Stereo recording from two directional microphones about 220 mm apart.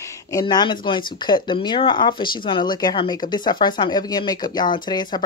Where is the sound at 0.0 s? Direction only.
15° left (ahead or behind).